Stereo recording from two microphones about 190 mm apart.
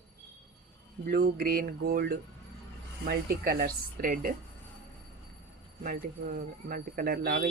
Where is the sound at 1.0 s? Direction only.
55° right (ahead or behind).